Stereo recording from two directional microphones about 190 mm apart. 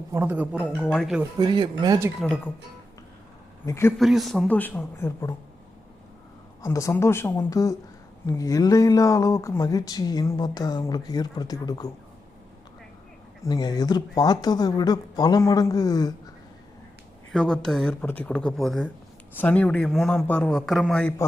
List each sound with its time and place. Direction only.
0.1 s a man's voice: 10° right (ahead or behind)
1.4 s speech: 25° right (ahead or behind)
2.2 s speech: 10° left (ahead or behind)
3.7 s speech: 15° left (ahead or behind)
3.9 s a man's voice: centre (ahead or behind)
6.6 s speech: 15° left (ahead or behind)
13.4 s speech: 20° left (ahead or behind)
17.3 s a man's voice: centre (ahead or behind)